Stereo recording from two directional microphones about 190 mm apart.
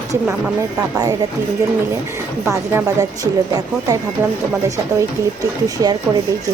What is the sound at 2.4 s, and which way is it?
Speech, 15° right (ahead or behind).